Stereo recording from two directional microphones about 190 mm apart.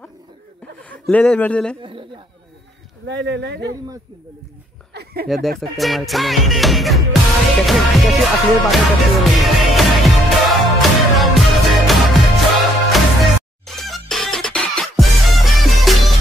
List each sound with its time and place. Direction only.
0.8 s a man's voice: 5° left (ahead or behind)
1.8 s a sound: 25° right (ahead or behind)
3.1 s speech: 65° right (ahead or behind)
4.9 s a sound: 55° right (ahead or behind)
5.3 s speech: centre (ahead or behind)
7.6 s music: centre (ahead or behind)